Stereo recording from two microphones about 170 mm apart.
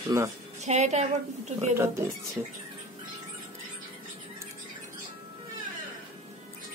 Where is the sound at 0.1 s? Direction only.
15° right (ahead or behind).